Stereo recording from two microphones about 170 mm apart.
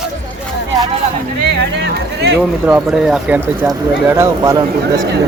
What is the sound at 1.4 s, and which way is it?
Speech, 90° right.